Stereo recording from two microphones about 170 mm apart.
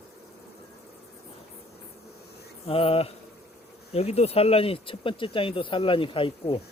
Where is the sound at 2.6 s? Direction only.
35° left (ahead or behind).